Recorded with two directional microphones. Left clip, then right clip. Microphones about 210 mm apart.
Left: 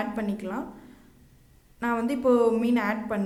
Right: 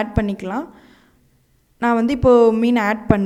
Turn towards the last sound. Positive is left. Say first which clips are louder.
# right 9 dB
turn(degrees=-45)  # may be behind; listen again after turning